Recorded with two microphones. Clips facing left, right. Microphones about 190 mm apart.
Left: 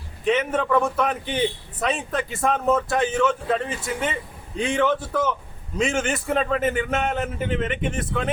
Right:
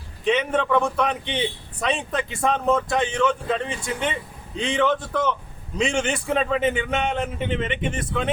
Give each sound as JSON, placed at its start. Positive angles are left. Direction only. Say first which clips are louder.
{"t": 0.3, "sound": "a man's voice", "louder": "even", "side_deg": 5}